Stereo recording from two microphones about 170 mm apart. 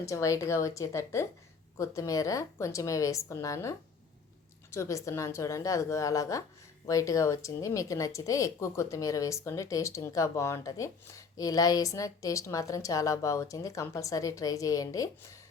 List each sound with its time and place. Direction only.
0.0 s a woman's voice: 20° left (ahead or behind)